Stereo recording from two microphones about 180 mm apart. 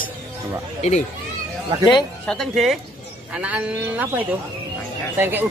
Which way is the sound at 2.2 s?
Centre (ahead or behind).